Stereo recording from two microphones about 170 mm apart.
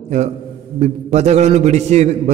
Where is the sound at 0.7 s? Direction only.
40° right (ahead or behind).